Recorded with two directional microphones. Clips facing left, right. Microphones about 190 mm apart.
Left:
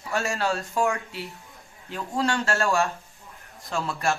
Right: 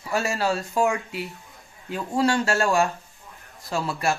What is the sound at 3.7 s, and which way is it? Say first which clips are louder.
Speech: right 2 dB; 5° right (ahead or behind).